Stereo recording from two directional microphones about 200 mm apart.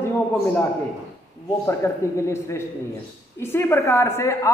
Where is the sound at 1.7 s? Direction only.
15° left (ahead or behind).